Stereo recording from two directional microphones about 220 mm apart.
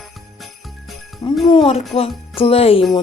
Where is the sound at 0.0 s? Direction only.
Centre (ahead or behind).